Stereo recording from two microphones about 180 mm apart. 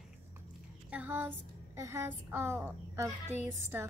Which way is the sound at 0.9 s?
10° right (ahead or behind).